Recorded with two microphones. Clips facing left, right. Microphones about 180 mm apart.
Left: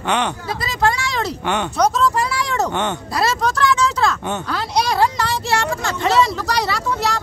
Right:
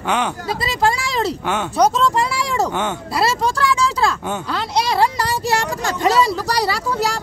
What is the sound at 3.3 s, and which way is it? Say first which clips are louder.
Speech: even; 30° right (ahead or behind).